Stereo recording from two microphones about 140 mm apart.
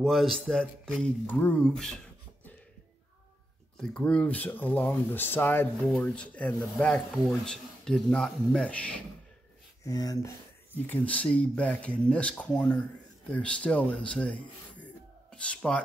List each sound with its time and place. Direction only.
0.0 s speech: centre (ahead or behind)
3.7 s speech: 5° left (ahead or behind)
9.8 s speech: 25° left (ahead or behind)
10.9 s speech: 10° left (ahead or behind)